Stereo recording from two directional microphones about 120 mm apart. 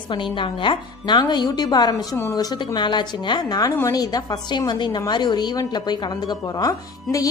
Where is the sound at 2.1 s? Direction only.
25° left (ahead or behind).